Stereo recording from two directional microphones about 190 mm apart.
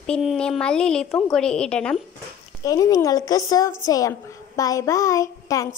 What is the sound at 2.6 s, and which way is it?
A woman's voice, 20° left (ahead or behind).